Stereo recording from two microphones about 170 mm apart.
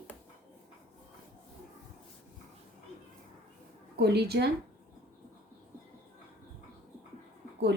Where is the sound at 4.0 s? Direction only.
70° right (ahead or behind).